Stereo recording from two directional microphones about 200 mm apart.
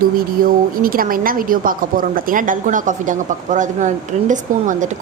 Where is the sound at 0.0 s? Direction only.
45° right (ahead or behind).